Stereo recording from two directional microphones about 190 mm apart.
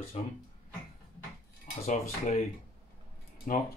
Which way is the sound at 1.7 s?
35° left (ahead or behind).